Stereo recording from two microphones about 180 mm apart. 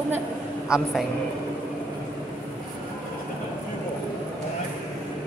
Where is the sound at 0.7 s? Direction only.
5° right (ahead or behind).